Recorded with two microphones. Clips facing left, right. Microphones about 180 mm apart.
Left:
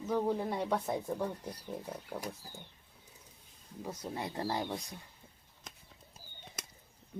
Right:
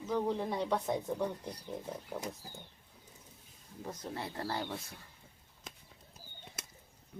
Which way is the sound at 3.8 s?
10° left (ahead or behind).